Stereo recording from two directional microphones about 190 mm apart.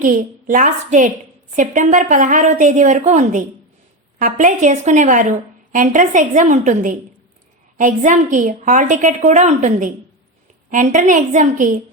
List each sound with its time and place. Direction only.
0.0 s a woman's voice: 45° right (ahead or behind)